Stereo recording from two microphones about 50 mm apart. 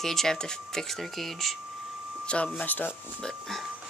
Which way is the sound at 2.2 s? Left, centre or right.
Left.